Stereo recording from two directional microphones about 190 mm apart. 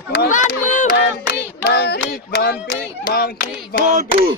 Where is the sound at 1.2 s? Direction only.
60° left (ahead or behind).